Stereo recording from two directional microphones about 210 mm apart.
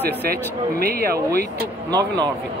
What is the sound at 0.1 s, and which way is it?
Speech, 45° right (ahead or behind).